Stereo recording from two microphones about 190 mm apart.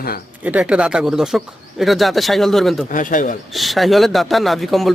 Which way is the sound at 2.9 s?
45° left (ahead or behind).